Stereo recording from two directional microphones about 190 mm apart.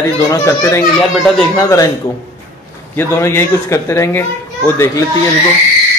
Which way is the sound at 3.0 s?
15° left (ahead or behind).